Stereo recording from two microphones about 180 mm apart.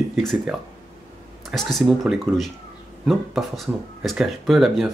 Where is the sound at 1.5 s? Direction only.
Centre (ahead or behind).